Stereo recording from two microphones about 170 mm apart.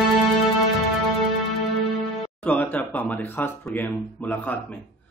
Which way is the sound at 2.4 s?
10° left (ahead or behind).